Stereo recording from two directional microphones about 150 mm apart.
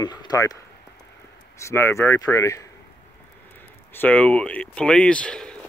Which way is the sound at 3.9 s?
10° left (ahead or behind).